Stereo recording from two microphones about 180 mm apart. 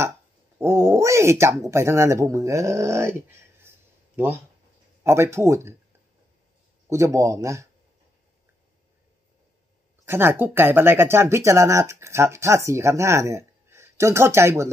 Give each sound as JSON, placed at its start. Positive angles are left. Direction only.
{"t": 0.6, "sound": "speech", "side_deg": -15}
{"t": 5.0, "sound": "speech", "side_deg": -15}
{"t": 6.9, "sound": "speech", "side_deg": -15}
{"t": 10.0, "sound": "speech", "side_deg": -10}